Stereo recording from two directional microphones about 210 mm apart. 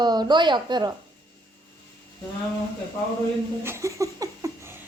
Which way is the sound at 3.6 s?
15° right (ahead or behind).